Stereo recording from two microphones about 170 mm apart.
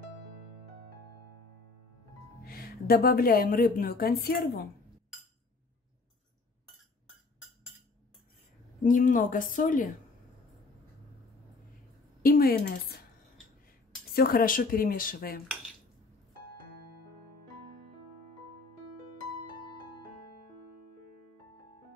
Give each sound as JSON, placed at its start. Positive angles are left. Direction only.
{"t": 2.4, "sound": "a woman's voice", "side_deg": 60}
{"t": 8.8, "sound": "speech", "side_deg": 50}
{"t": 12.2, "sound": "a woman's voice", "side_deg": 60}
{"t": 14.1, "sound": "a woman's voice", "side_deg": 60}